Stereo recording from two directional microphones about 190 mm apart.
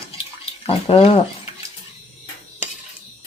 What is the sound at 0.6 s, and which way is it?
Speech, 30° left (ahead or behind).